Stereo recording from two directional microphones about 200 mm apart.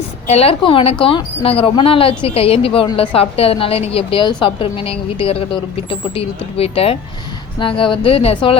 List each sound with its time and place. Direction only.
0.3 s speech: 30° left (ahead or behind)